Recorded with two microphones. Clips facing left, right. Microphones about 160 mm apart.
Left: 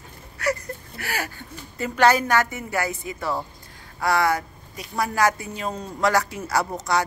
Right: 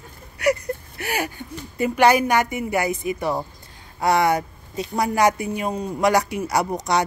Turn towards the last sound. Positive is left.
turn(degrees=-20)  # may be behind; listen again after turning